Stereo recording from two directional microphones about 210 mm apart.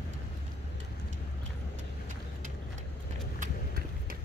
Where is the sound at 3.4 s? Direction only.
45° right (ahead or behind).